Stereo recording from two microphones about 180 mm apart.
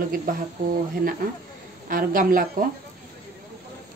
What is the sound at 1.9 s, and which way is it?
Speech, 50° right (ahead or behind).